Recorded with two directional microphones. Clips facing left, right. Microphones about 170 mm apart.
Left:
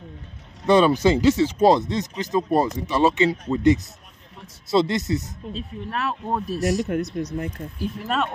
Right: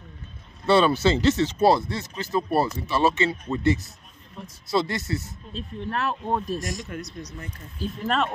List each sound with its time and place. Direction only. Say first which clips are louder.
0.7 s speech: left 3 dB; 15° left (ahead or behind)
5.5 s speech: even; centre (ahead or behind)
6.6 s speech: left 11 dB; 70° left (ahead or behind)
7.8 s speech: even; 5° left (ahead or behind)